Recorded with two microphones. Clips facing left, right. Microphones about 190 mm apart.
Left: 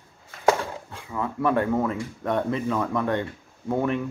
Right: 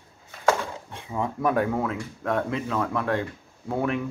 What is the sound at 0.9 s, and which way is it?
Speech, 25° right (ahead or behind).